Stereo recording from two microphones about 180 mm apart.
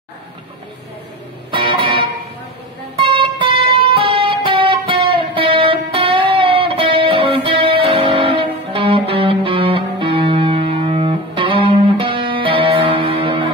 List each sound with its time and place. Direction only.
1.5 s music: 30° right (ahead or behind)